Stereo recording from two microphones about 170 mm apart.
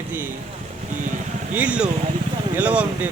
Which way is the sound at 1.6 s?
5° right (ahead or behind).